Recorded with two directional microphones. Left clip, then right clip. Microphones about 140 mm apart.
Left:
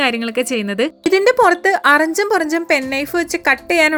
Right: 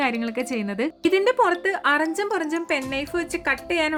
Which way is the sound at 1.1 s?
35° left (ahead or behind).